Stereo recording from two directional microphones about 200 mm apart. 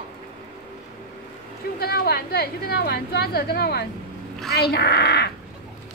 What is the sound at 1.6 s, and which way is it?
A woman's voice, 50° left (ahead or behind).